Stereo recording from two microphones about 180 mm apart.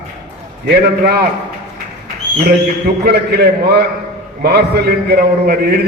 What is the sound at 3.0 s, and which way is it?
A man's voice, 60° right (ahead or behind).